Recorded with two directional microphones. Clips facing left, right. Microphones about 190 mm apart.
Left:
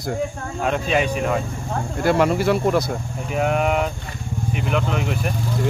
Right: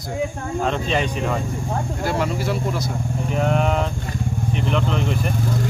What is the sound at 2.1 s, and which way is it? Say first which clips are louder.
Speech: left 7 dB; 65° left (ahead or behind).